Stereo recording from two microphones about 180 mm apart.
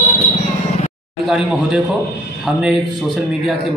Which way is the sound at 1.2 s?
5° right (ahead or behind).